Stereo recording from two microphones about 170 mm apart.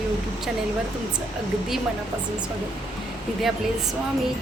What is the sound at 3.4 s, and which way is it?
Speech, centre (ahead or behind).